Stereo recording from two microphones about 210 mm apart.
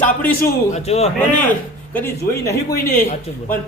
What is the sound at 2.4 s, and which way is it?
Speech, 15° left (ahead or behind).